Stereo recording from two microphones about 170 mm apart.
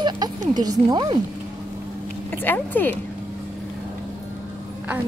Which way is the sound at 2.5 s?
10° left (ahead or behind).